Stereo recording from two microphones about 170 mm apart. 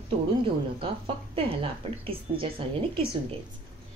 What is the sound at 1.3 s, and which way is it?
Speech, 35° right (ahead or behind).